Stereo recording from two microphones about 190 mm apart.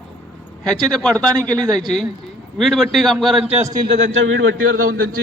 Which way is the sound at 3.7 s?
50° right (ahead or behind).